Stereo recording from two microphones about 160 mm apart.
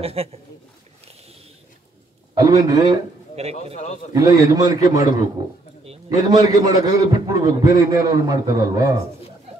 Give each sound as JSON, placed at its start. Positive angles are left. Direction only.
{"t": 0.0, "sound": "a man's voice", "side_deg": -40}
{"t": 2.3, "sound": "a man's voice", "side_deg": -25}
{"t": 3.4, "sound": "a man's voice", "side_deg": -40}
{"t": 3.7, "sound": "a man's voice", "side_deg": 45}
{"t": 4.1, "sound": "a man's voice", "side_deg": -20}
{"t": 6.2, "sound": "a man's voice", "side_deg": -25}